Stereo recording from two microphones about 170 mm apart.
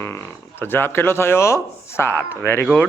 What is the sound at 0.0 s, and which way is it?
A man's voice, 15° left (ahead or behind).